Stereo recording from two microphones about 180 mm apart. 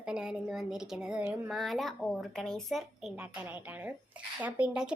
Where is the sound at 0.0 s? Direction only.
5° right (ahead or behind).